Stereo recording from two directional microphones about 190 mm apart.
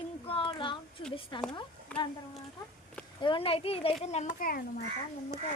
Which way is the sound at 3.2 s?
30° left (ahead or behind).